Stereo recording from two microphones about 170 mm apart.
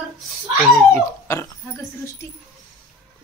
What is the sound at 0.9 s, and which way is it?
Speech, 15° left (ahead or behind).